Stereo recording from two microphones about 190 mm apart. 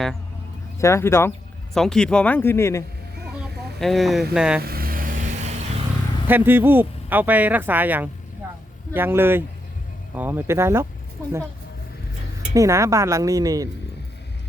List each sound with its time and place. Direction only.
0.8 s speech: 15° left (ahead or behind)
1.7 s speech: 5° left (ahead or behind)
3.4 s speech: centre (ahead or behind)
4.6 s vehicle: 50° right (ahead or behind)
6.2 s speech: 10° right (ahead or behind)
12.5 s speech: 15° right (ahead or behind)